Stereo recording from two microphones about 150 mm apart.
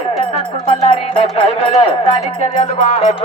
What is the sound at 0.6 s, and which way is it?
Speech, 35° left (ahead or behind).